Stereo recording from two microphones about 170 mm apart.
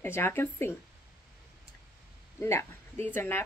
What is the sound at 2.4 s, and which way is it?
Speech, 15° left (ahead or behind).